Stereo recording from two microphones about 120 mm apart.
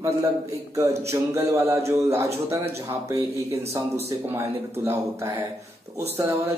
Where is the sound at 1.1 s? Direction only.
20° right (ahead or behind).